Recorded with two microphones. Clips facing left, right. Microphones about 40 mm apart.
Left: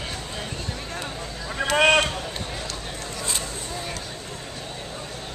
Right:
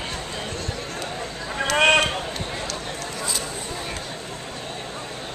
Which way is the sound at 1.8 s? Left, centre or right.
Centre.